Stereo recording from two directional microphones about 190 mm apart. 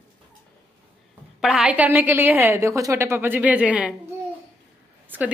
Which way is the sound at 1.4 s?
5° right (ahead or behind).